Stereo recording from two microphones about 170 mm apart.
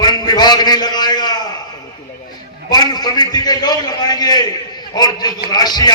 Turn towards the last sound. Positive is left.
turn(degrees=25)  # may be behind; listen again after turning